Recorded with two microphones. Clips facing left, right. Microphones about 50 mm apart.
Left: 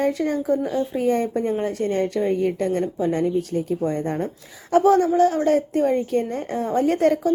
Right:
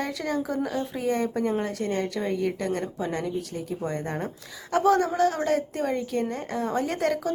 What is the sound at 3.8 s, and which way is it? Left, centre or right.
Speech, right.